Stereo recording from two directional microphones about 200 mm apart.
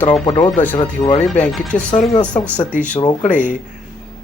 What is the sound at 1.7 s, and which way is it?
Speech, 40° left (ahead or behind).